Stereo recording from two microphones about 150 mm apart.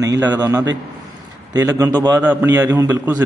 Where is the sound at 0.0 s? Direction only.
25° right (ahead or behind).